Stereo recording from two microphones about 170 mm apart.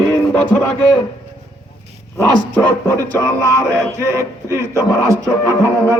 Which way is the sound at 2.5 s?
10° left (ahead or behind).